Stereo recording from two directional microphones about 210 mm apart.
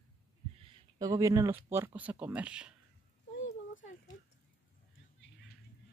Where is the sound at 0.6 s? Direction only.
20° right (ahead or behind); by 2.7 s 5° right (ahead or behind).